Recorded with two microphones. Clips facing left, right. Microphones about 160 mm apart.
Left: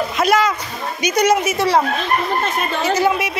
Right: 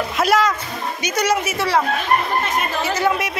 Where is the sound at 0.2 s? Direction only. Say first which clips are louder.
Left 1 dB; centre (ahead or behind).